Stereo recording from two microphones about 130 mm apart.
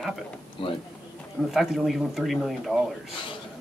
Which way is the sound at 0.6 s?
40° left (ahead or behind).